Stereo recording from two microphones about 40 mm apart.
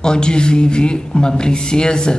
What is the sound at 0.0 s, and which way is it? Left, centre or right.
A man's voice, centre.